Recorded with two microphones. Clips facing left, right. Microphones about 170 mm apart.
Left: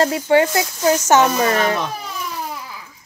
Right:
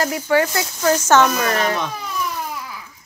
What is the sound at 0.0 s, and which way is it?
Speech, 25° left (ahead or behind).